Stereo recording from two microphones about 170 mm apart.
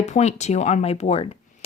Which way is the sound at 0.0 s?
40° left (ahead or behind).